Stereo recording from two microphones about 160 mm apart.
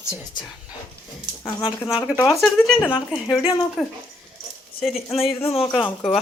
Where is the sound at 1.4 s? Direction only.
25° left (ahead or behind).